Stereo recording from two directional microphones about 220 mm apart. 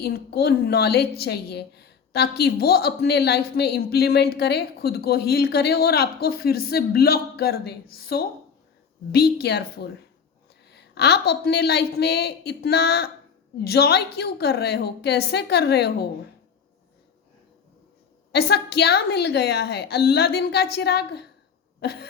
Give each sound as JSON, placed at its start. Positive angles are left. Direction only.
{"t": 0.0, "sound": "a woman's voice", "side_deg": 45}
{"t": 18.3, "sound": "a woman's voice", "side_deg": 45}
{"t": 21.8, "sound": "a sound", "side_deg": 45}